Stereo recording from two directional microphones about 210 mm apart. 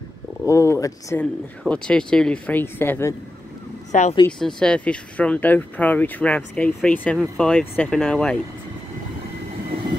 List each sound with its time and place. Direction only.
0.5 s speech: 15° left (ahead or behind)
1.6 s speech: 5° left (ahead or behind)
3.9 s speech: 35° left (ahead or behind)
4.3 s speech: 5° left (ahead or behind)